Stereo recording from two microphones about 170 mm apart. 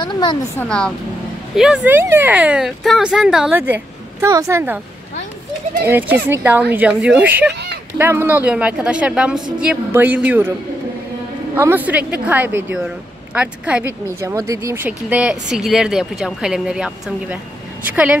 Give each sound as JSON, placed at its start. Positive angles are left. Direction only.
{"t": 0.0, "sound": "speech", "side_deg": 25}
{"t": 0.6, "sound": "speech", "side_deg": 5}
{"t": 5.9, "sound": "speech", "side_deg": -10}
{"t": 11.5, "sound": "speech", "side_deg": -10}
{"t": 14.3, "sound": "speech", "side_deg": -20}